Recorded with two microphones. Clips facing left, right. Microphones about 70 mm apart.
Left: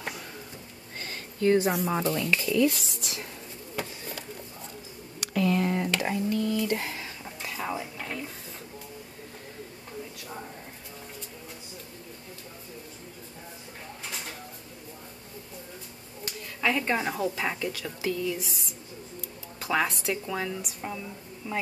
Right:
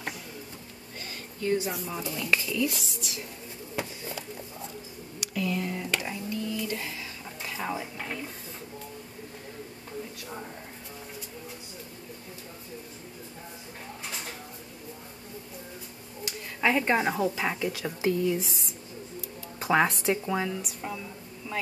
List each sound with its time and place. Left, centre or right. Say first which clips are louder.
0.9 s a sound: left 3 dB; left
1.9 s speech: left 3 dB; left
5.2 s a sound: left 5 dB; left
7.4 s speech: even; centre
16.6 s a woman's voice: right 2 dB; centre
17.7 s speech: right 3 dB; right
19.6 s speech: right 3 dB; right
20.3 s speech: right 2 dB; centre